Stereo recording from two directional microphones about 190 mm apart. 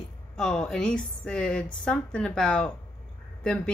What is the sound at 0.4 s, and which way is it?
A woman's voice, 5° left (ahead or behind).